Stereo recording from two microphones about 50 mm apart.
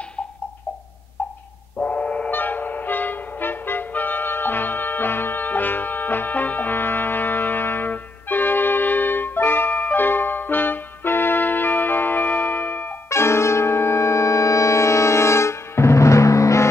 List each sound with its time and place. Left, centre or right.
1.8 s gong: left
2.3 s music: left
13.1 s music: left